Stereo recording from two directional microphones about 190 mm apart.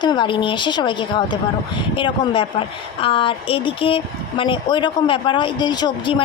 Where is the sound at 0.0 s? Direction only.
25° left (ahead or behind).